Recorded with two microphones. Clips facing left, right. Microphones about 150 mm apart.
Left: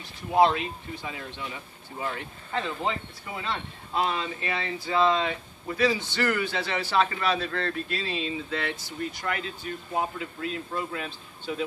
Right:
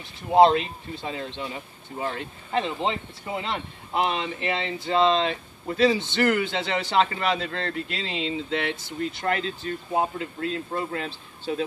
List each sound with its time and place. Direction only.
0.3 s speech: 25° right (ahead or behind)
10.7 s speech: 35° right (ahead or behind)